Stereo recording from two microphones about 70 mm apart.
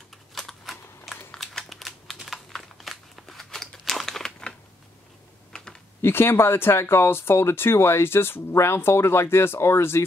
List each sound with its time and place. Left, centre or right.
0.3 s a sound: centre
1.4 s typing: centre
6.0 s speech: left